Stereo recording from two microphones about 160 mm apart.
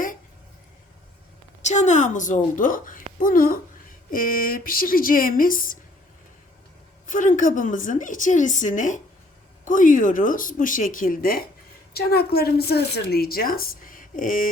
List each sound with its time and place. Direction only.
1.6 s a woman's voice: 45° left (ahead or behind)
7.1 s a woman's voice: 55° left (ahead or behind)
11.9 s a woman's voice: 75° left (ahead or behind); by 14.4 s 55° left (ahead or behind)